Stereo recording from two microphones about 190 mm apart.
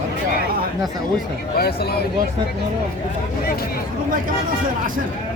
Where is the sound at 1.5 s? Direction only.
55° left (ahead or behind).